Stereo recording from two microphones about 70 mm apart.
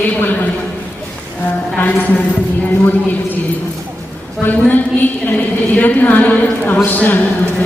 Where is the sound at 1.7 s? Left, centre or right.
Left.